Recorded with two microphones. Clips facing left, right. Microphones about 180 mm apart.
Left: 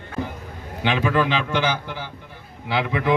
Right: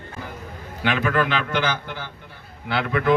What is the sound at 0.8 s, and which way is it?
A man's voice, 15° left (ahead or behind).